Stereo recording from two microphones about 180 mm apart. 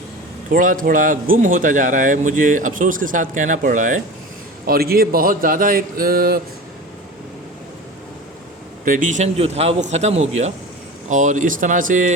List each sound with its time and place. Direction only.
0.5 s speech: 50° right (ahead or behind)
4.6 s speech: 55° right (ahead or behind)
8.8 s a man's voice: 50° right (ahead or behind)